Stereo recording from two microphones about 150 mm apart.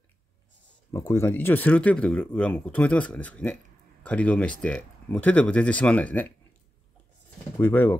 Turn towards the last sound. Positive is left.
turn(degrees=15)  # may be behind; listen again after turning